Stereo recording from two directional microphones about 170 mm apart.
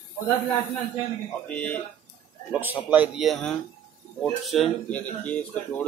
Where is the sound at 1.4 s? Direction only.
5° left (ahead or behind).